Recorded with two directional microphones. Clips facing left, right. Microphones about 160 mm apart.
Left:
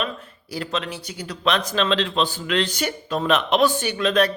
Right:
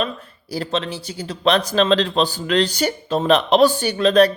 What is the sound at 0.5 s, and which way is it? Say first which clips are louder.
A woman's voice: right 4 dB; 35° right (ahead or behind).